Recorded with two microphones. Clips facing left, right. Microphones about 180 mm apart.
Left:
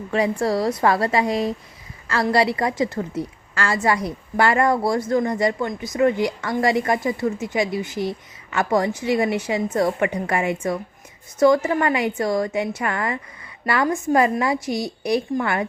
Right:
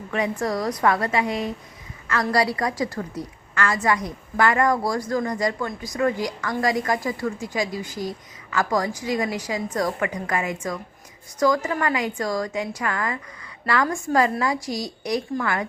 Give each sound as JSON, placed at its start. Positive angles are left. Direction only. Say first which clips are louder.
{"t": 0.1, "sound": "a woman's voice", "louder": "left 4 dB", "side_deg": 30}